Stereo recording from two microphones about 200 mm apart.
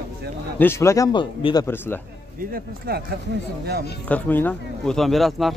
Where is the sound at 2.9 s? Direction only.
50° right (ahead or behind).